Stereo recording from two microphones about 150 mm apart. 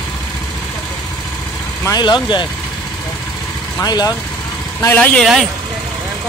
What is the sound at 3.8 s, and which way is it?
Speech, 25° left (ahead or behind).